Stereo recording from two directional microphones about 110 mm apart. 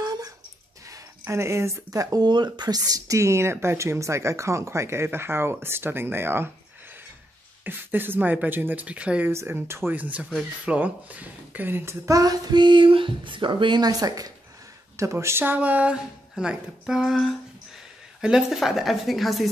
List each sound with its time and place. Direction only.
0.0 s a sound: 35° right (ahead or behind)
0.8 s speech: 30° right (ahead or behind)
7.6 s speech: 20° right (ahead or behind)
9.3 s a woman's voice: 25° right (ahead or behind); by 19.5 s centre (ahead or behind)